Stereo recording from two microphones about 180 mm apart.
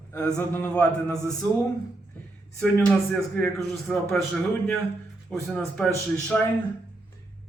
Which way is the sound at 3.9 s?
5° left (ahead or behind).